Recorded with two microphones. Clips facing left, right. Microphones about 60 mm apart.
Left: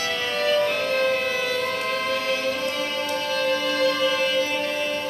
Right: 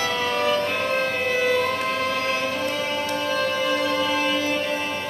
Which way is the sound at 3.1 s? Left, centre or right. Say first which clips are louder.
Left 1 dB; centre.